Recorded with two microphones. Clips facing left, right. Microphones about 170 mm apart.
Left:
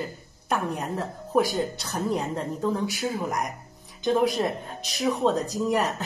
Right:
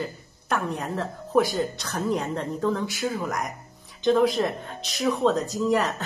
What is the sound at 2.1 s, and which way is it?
Speech, 10° left (ahead or behind).